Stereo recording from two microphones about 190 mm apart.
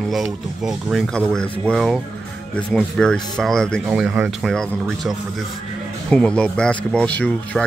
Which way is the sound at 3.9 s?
10° right (ahead or behind).